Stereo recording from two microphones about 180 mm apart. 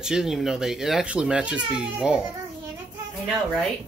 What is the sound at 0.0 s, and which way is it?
Speech, 5° right (ahead or behind).